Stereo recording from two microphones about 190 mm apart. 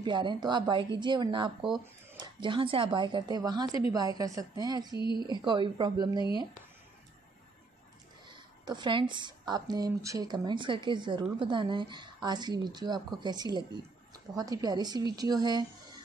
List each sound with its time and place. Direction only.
0.0 s a woman's voice: 25° right (ahead or behind)
8.6 s a woman's voice: 25° right (ahead or behind)